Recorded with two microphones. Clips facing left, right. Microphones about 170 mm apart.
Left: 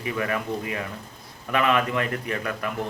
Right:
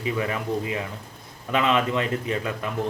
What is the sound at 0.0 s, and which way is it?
Speech, 20° right (ahead or behind).